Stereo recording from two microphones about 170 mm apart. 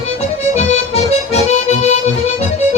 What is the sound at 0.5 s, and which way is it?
Accordion, 40° left (ahead or behind).